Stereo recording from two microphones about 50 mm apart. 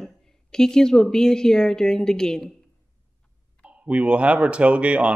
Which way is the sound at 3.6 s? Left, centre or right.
Right.